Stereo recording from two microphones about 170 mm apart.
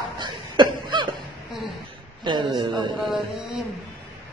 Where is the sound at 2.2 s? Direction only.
25° right (ahead or behind).